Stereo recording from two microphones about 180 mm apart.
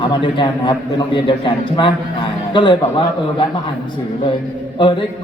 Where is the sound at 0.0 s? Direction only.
25° left (ahead or behind).